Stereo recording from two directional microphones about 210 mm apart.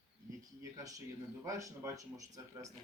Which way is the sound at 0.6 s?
15° right (ahead or behind).